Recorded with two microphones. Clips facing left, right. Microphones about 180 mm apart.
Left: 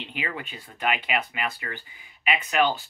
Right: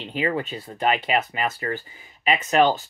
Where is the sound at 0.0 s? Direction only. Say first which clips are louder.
Right 9 dB; 40° right (ahead or behind).